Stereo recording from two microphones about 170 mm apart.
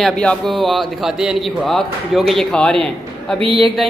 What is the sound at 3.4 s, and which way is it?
Speech, 30° right (ahead or behind).